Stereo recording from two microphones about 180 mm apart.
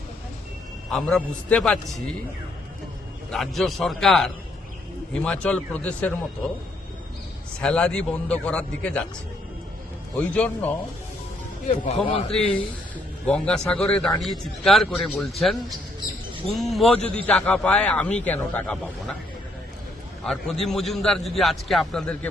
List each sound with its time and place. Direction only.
0.9 s a man's voice: 5° left (ahead or behind)
3.3 s a man's voice: centre (ahead or behind)
7.6 s a man's voice: 5° left (ahead or behind)
10.2 s a man's voice: 5° left (ahead or behind)
11.6 s speech: 35° left (ahead or behind)
13.2 s a man's voice: 5° left (ahead or behind)
20.2 s a man's voice: centre (ahead or behind)